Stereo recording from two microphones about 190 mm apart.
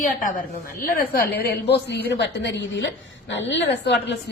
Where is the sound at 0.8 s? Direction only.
50° left (ahead or behind).